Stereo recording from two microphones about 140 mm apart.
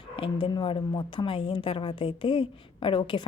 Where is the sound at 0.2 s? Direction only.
40° left (ahead or behind).